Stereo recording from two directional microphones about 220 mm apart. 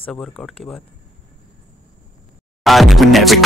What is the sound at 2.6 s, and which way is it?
Speech, centre (ahead or behind).